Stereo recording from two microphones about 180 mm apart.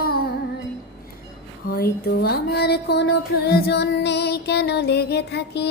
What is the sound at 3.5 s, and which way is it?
Music, 65° left (ahead or behind).